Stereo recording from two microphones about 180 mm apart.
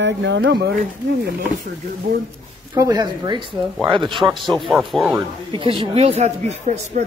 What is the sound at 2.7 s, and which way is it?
Speech, 20° right (ahead or behind).